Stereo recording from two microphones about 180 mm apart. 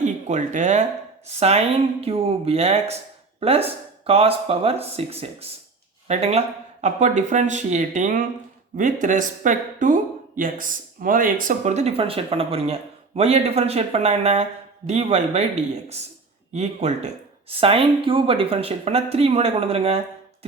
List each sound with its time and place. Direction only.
0.0 s speech: 40° right (ahead or behind)
16.5 s speech: 40° right (ahead or behind)